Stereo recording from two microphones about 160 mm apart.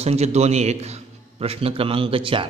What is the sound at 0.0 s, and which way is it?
A man's voice, 40° right (ahead or behind).